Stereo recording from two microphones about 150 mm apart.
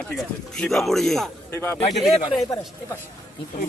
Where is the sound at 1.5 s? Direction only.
15° left (ahead or behind).